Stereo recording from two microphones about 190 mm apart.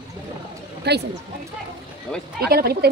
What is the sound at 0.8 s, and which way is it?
Speech, 60° right (ahead or behind).